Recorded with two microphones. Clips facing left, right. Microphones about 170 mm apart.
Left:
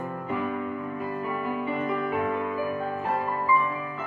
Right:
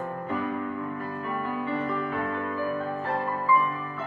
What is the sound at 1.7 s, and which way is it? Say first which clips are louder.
Music: left 2 dB; 15° left (ahead or behind).